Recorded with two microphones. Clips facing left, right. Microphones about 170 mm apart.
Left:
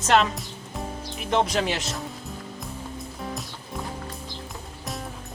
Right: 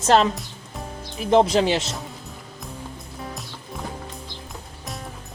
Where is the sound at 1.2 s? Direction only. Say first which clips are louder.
Right 7 dB; 35° right (ahead or behind).